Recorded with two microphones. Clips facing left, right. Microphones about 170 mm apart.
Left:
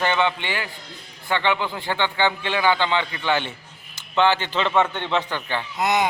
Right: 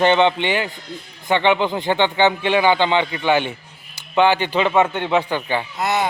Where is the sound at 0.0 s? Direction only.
25° right (ahead or behind).